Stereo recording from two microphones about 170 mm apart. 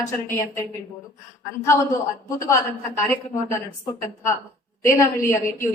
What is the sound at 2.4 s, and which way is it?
Speech, 15° left (ahead or behind).